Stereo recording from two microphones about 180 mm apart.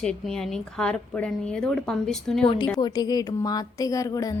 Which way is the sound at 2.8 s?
20° left (ahead or behind).